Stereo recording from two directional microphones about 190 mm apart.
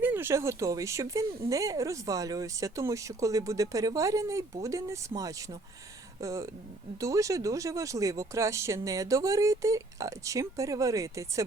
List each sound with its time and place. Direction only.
0.0 s speech: 10° right (ahead or behind)